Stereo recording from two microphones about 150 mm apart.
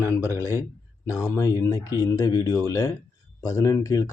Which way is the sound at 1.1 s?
20° left (ahead or behind).